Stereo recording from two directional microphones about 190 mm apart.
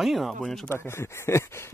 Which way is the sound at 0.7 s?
15° left (ahead or behind).